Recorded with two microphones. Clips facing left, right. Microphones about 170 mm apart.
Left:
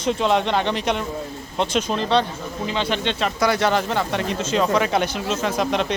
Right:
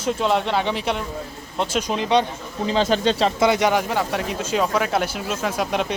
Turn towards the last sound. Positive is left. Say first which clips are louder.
# left 1 dB
turn(degrees=-5)  # may be behind; listen again after turning